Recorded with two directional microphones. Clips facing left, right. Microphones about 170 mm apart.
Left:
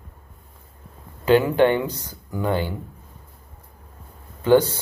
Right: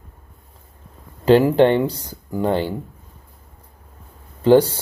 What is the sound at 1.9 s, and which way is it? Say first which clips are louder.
Speech: right 3 dB; 10° right (ahead or behind).